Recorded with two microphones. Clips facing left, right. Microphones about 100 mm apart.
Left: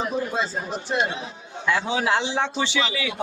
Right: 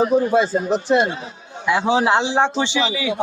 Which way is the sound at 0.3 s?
60° right (ahead or behind).